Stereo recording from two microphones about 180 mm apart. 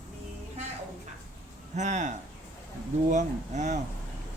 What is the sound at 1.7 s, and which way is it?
Speech, 40° right (ahead or behind).